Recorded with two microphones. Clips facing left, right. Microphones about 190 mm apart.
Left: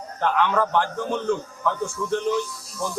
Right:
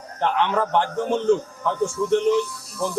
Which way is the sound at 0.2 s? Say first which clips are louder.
Even; 25° right (ahead or behind).